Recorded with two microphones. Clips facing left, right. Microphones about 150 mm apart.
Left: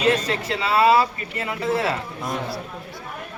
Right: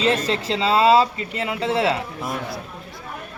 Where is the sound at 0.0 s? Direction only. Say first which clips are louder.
Even; 25° right (ahead or behind).